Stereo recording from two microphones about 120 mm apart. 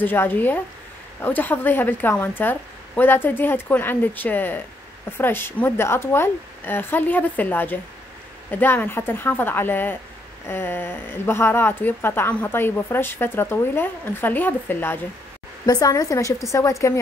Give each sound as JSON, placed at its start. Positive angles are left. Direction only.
{"t": 0.0, "sound": "a woman's voice", "side_deg": 15}
{"t": 15.6, "sound": "a woman's voice", "side_deg": 30}